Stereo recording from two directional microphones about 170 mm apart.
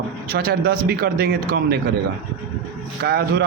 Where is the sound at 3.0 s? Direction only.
70° right (ahead or behind).